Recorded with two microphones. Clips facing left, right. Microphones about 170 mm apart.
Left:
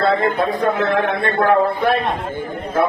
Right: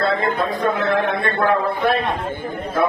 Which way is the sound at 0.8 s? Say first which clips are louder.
Left 1 dB; 65° left (ahead or behind).